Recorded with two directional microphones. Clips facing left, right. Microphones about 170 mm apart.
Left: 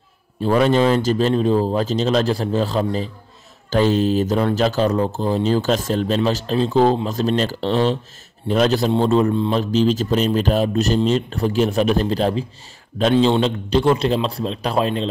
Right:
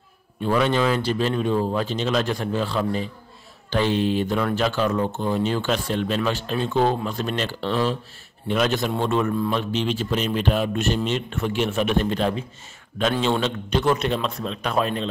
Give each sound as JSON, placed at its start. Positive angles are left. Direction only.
{"t": 0.4, "sound": "a man's voice", "side_deg": 40}